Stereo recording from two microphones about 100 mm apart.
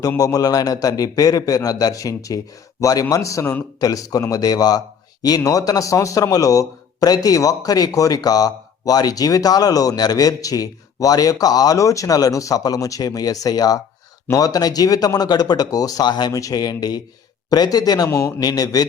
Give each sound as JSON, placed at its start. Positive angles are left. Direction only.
{"t": 0.2, "sound": "a man's voice", "side_deg": 35}
{"t": 16.3, "sound": "a man's voice", "side_deg": 35}